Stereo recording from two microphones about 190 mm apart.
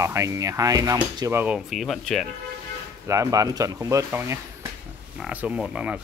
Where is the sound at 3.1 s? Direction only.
15° right (ahead or behind).